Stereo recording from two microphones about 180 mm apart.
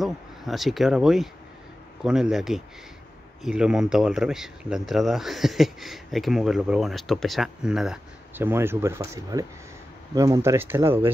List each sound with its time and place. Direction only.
0.0 s speech: centre (ahead or behind)